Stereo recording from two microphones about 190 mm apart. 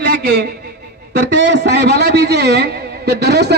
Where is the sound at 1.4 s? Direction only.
65° right (ahead or behind).